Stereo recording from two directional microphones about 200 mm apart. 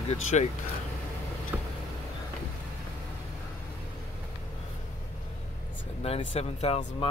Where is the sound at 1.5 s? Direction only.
5° right (ahead or behind).